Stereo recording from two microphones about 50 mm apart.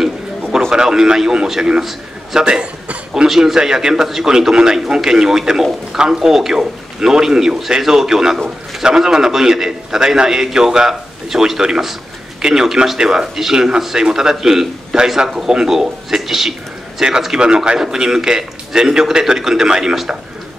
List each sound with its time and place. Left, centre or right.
0.7 s a man's voice: centre
2.4 s speech: right
3.3 s a man's voice: centre